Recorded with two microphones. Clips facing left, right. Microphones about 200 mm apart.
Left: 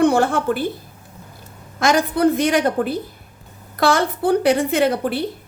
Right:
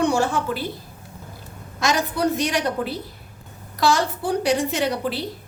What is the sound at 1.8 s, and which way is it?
A woman's voice, 55° left (ahead or behind).